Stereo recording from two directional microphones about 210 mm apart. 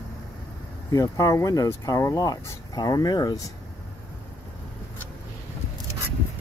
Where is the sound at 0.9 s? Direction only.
15° left (ahead or behind).